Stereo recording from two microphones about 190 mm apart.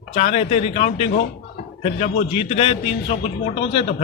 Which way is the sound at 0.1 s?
30° left (ahead or behind).